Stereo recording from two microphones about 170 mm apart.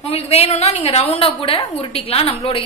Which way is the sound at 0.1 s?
35° left (ahead or behind).